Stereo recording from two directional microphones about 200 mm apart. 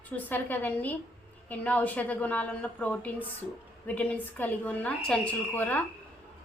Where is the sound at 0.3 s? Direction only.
10° left (ahead or behind).